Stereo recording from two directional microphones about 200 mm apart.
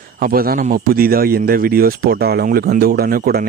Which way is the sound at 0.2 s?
45° right (ahead or behind).